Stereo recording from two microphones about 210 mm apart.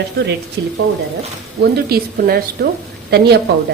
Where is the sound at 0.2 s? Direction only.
50° right (ahead or behind).